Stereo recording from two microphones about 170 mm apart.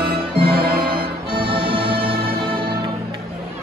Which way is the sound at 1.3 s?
30° right (ahead or behind).